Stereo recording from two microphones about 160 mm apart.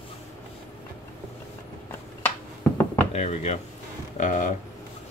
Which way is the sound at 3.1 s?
45° left (ahead or behind).